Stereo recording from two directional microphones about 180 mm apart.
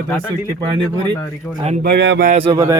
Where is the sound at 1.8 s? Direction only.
65° right (ahead or behind).